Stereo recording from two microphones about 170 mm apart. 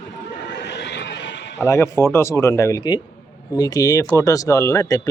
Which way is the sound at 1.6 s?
15° left (ahead or behind).